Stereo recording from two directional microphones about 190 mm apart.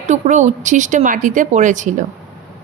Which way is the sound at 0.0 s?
40° right (ahead or behind).